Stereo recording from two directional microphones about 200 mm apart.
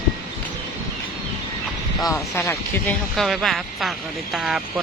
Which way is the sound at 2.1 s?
15° left (ahead or behind).